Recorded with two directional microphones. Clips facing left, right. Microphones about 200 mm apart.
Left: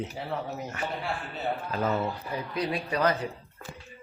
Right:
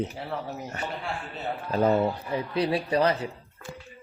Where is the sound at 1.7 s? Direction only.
35° right (ahead or behind).